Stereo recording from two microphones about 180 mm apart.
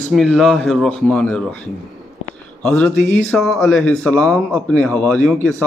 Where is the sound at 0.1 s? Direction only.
Centre (ahead or behind).